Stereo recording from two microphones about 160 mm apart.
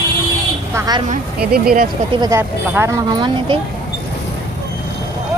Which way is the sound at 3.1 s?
30° right (ahead or behind).